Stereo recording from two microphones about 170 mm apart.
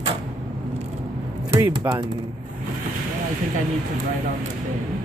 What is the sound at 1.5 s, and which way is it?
Speech, 15° right (ahead or behind).